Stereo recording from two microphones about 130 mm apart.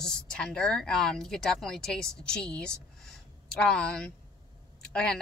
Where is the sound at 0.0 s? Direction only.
5° left (ahead or behind).